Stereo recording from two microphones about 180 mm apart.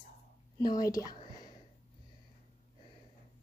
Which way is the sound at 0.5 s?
20° left (ahead or behind).